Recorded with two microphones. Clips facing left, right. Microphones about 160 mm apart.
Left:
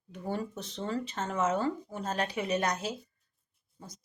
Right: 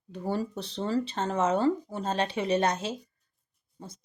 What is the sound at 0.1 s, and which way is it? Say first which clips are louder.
Speech: right 4 dB; 35° right (ahead or behind).